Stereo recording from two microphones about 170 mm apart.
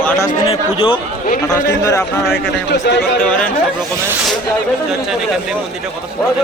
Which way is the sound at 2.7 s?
90° left.